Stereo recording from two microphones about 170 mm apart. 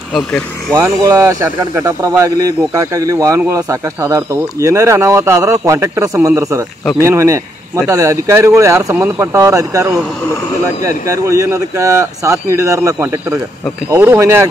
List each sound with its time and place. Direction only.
0.1 s speech: 5° left (ahead or behind)
1.0 s speech: 15° right (ahead or behind)
11.1 s speech: 20° right (ahead or behind)